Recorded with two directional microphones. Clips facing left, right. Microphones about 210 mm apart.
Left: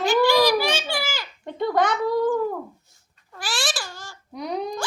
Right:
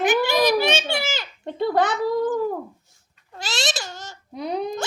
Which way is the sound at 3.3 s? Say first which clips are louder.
Right 1 dB; 25° right (ahead or behind).